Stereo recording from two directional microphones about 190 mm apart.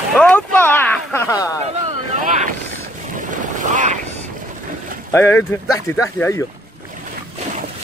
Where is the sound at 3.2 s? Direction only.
45° right (ahead or behind).